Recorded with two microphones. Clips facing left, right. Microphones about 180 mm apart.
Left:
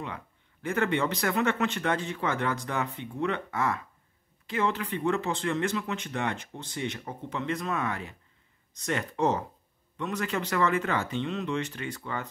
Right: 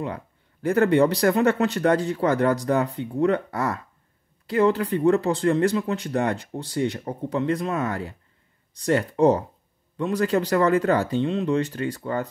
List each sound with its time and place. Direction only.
0.0 s speech: 40° right (ahead or behind)